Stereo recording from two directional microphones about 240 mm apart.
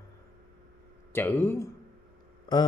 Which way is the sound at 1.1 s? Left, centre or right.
Centre.